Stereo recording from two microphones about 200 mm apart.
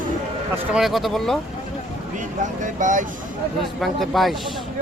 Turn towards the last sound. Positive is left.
turn(degrees=0)  # may be behind; listen again after turning